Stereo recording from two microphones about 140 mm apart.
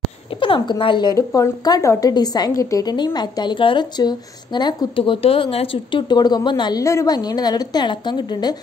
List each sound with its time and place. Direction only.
0.4 s speech: 40° left (ahead or behind)
1.1 s a woman's voice: 20° left (ahead or behind)